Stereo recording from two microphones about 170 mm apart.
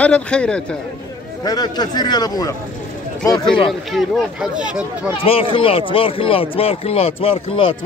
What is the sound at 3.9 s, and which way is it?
Speech, 5° right (ahead or behind).